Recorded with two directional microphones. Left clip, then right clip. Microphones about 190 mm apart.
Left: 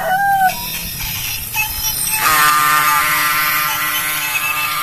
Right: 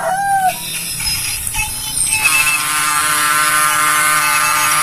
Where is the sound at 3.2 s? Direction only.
5° right (ahead or behind).